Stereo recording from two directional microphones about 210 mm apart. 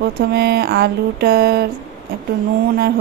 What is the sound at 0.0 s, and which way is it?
Speech, 50° right (ahead or behind).